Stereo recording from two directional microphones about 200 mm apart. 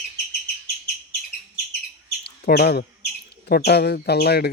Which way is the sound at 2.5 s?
50° left (ahead or behind).